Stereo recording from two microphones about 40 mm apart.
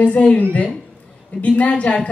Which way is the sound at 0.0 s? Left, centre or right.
Left.